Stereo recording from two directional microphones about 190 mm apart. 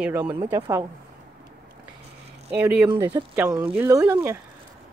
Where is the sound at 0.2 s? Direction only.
30° right (ahead or behind).